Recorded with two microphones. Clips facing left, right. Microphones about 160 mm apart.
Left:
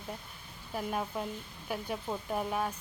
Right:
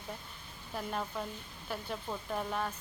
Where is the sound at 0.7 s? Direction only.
10° left (ahead or behind).